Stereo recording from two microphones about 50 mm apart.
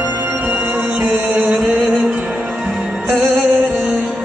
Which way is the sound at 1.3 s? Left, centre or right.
Right.